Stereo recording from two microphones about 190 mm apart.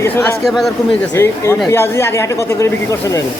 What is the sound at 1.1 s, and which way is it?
Speech, 15° left (ahead or behind).